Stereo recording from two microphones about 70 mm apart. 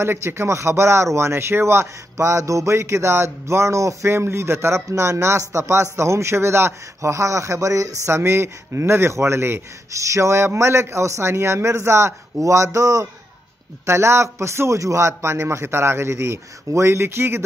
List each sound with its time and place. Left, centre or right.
0.0 s speech: right
13.8 s speech: right